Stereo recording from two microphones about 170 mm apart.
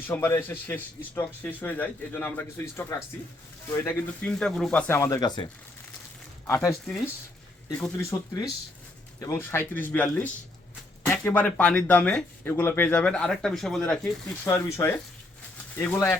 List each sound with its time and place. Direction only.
0.1 s speech: 15° left (ahead or behind)
7.8 s speech: 20° left (ahead or behind)
14.4 s speech: 15° left (ahead or behind)